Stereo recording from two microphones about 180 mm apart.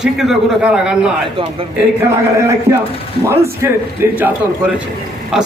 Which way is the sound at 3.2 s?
15° right (ahead or behind).